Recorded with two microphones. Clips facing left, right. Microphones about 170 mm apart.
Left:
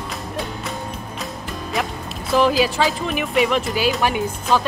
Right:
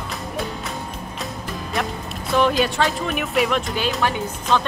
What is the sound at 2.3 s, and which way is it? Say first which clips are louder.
Speech: left 2 dB; centre (ahead or behind).